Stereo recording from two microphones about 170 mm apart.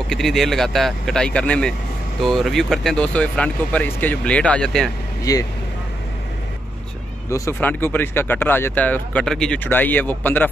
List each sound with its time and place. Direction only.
0.1 s speech: centre (ahead or behind)
5.2 s speech: 20° left (ahead or behind)
7.2 s speech: 15° left (ahead or behind)